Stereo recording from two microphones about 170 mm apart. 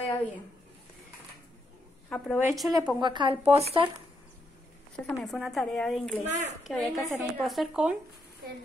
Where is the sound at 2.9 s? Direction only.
25° right (ahead or behind).